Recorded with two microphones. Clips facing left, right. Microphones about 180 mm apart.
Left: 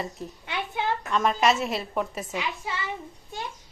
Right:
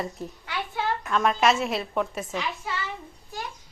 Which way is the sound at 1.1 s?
Centre (ahead or behind).